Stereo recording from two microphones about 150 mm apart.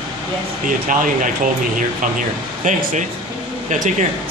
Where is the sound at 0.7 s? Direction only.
65° right (ahead or behind).